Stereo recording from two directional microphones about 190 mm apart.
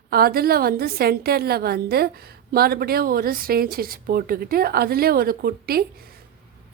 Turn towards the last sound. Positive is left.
turn(degrees=-55)  # may be behind; listen again after turning